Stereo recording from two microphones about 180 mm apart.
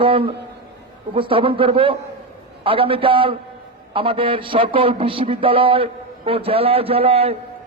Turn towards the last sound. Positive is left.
turn(degrees=-35)  # may be behind; listen again after turning